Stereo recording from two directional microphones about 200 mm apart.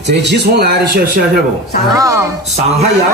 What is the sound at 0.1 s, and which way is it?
A man's voice, 55° right (ahead or behind).